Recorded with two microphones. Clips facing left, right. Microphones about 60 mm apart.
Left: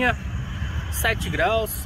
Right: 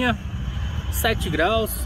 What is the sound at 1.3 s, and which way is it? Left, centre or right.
Speech, centre.